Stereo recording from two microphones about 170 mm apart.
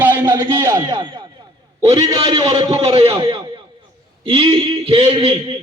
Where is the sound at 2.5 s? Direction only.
35° right (ahead or behind).